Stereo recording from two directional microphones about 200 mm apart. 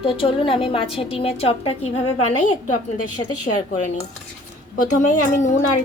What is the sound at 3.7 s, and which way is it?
A woman's voice, 35° left (ahead or behind).